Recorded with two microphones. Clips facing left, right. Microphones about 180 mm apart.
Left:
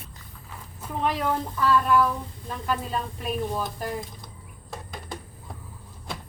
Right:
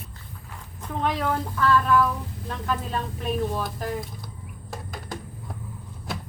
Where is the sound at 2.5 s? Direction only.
5° left (ahead or behind).